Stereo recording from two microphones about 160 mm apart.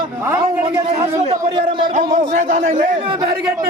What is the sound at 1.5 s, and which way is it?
Speech, 30° right (ahead or behind).